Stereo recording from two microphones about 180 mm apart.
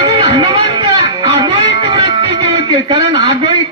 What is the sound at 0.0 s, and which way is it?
Music, 25° right (ahead or behind).